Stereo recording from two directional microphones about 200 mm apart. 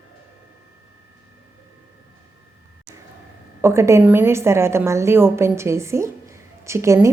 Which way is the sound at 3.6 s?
15° right (ahead or behind).